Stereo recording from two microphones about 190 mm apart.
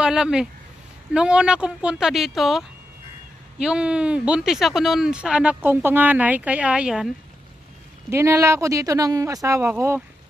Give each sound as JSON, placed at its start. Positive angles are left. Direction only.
{"t": 0.0, "sound": "speech", "side_deg": -5}
{"t": 3.6, "sound": "speech", "side_deg": -5}
{"t": 8.1, "sound": "speech", "side_deg": -15}